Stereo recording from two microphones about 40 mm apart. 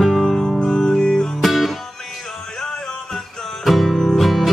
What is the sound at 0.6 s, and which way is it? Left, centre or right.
Music, centre.